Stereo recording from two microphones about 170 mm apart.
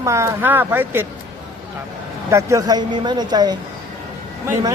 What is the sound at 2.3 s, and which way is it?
Speech, 20° right (ahead or behind).